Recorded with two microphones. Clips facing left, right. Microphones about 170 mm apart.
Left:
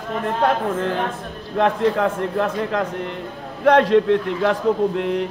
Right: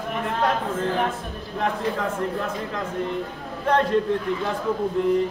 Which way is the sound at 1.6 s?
70° left (ahead or behind).